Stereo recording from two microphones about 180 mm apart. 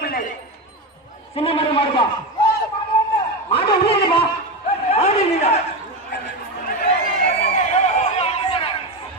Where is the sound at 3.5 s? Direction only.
30° left (ahead or behind).